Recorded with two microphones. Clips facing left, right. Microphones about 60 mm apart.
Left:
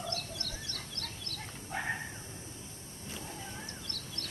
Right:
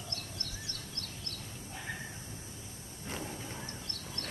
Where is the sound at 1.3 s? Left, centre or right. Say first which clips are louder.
Left 6 dB; left.